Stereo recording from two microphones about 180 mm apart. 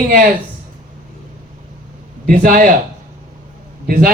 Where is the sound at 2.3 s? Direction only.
50° right (ahead or behind).